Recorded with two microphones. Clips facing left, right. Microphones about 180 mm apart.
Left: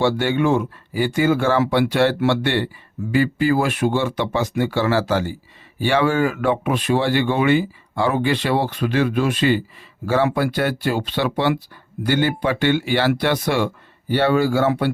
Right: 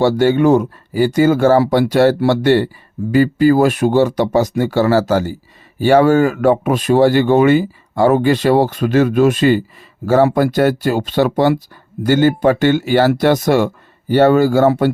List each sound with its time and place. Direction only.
0.0 s speech: 40° right (ahead or behind)